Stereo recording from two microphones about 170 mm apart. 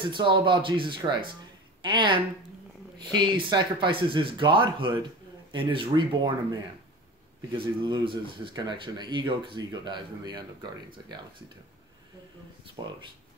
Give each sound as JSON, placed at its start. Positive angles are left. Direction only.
{"t": 0.0, "sound": "speech", "side_deg": -30}
{"t": 7.5, "sound": "speech", "side_deg": -30}
{"t": 12.8, "sound": "speech", "side_deg": -25}